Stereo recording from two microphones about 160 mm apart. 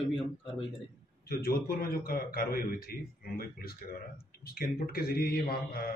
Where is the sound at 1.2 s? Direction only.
70° left (ahead or behind).